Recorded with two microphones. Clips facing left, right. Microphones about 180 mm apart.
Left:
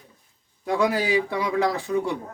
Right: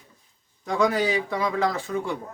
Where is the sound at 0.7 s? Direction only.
10° left (ahead or behind).